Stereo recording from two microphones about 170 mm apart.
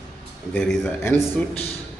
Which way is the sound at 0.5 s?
5° left (ahead or behind).